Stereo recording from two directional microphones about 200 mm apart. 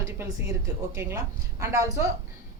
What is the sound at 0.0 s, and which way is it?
Speech, 15° right (ahead or behind).